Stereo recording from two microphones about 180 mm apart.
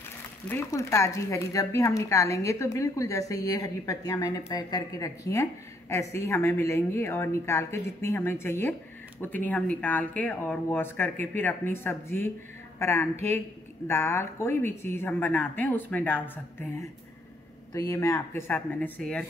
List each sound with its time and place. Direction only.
0.5 s speech: 15° left (ahead or behind)
17.7 s speech: 15° left (ahead or behind)